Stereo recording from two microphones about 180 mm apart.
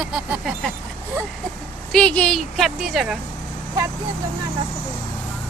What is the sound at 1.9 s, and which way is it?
Speech, 5° left (ahead or behind).